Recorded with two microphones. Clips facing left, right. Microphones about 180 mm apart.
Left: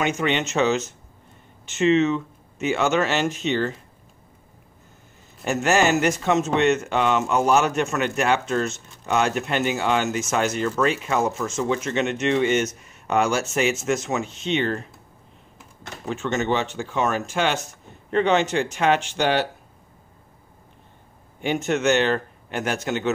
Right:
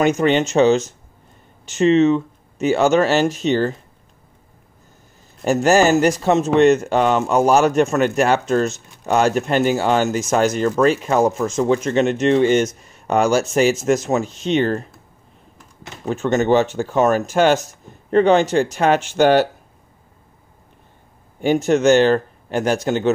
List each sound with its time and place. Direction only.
0.0 s speech: 40° right (ahead or behind)
5.4 s speech: 35° right (ahead or behind)
16.1 s speech: 40° right (ahead or behind)
21.4 s speech: 40° right (ahead or behind)